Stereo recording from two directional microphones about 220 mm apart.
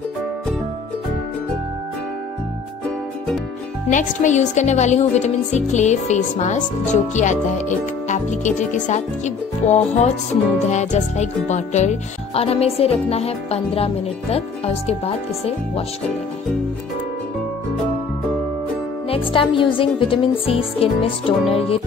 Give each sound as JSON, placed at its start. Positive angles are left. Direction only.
{"t": 3.9, "sound": "speech", "side_deg": 35}
{"t": 10.7, "sound": "music", "side_deg": 30}
{"t": 19.0, "sound": "music", "side_deg": 25}